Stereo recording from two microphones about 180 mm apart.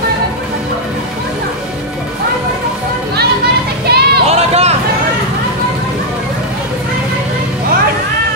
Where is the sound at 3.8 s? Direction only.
60° right (ahead or behind).